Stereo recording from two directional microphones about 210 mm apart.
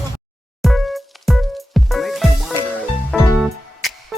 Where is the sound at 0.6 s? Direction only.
Centre (ahead or behind).